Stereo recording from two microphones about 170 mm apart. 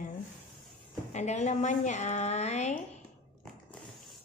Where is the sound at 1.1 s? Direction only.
40° left (ahead or behind).